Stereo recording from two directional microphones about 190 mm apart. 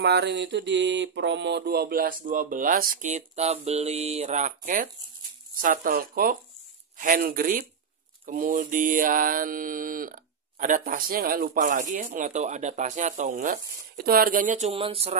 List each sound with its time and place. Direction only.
0.0 s mantra: 60° right (ahead or behind); by 14.7 s 40° right (ahead or behind)
14.7 s speech: 30° right (ahead or behind)